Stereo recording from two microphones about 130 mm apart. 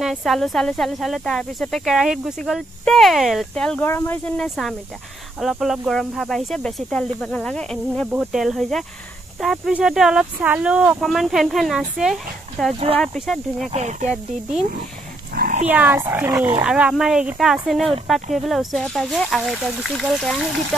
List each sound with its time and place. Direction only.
0.0 s speech: centre (ahead or behind)
3.9 s speech: 20° left (ahead or behind)
4.4 s speech: centre (ahead or behind)
12.7 s speech: 50° right (ahead or behind)
13.0 s speech: centre (ahead or behind)
13.7 s speech: 65° right (ahead or behind)
15.4 s dog: 65° right (ahead or behind)
15.7 s speech: 15° right (ahead or behind); by 20.4 s centre (ahead or behind)